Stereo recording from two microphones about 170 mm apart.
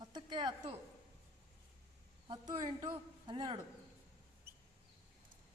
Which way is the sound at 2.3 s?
25° right (ahead or behind).